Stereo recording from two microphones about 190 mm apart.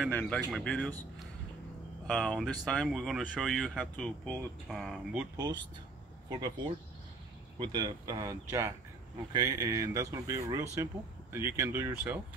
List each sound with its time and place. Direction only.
0.1 s speech: 10° left (ahead or behind)
6.2 s speech: 20° right (ahead or behind)
7.5 s speech: 25° right (ahead or behind)